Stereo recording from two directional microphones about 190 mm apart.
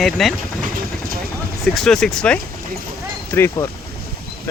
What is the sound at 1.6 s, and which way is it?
Speech, centre (ahead or behind).